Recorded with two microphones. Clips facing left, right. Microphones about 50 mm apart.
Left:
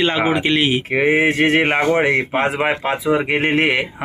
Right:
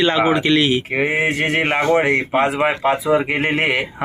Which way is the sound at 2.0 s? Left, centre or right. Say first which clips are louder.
Even; left.